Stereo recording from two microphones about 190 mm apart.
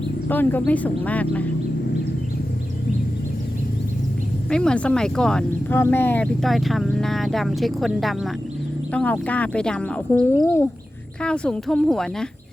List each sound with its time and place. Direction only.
0.3 s speech: 10° left (ahead or behind)
4.4 s speech: 5° left (ahead or behind)
10.2 s speech: 20° left (ahead or behind)
11.2 s speech: 5° left (ahead or behind)